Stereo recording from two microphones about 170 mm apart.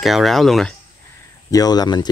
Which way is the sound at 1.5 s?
25° left (ahead or behind).